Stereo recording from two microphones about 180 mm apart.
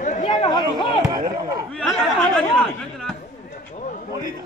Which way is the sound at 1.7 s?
5° left (ahead or behind).